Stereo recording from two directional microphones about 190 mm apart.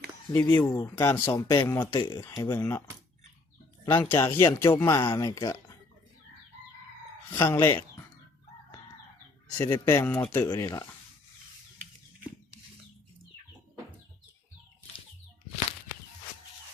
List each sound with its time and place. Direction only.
0.3 s speech: 10° left (ahead or behind)
4.0 s speech: 10° left (ahead or behind)
7.3 s speech: 10° left (ahead or behind)
9.6 s speech: 15° left (ahead or behind)